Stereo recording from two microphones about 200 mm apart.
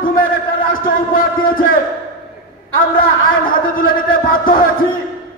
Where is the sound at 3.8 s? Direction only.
45° left (ahead or behind).